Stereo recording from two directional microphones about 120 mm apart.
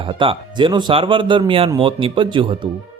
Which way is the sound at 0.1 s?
45° right (ahead or behind).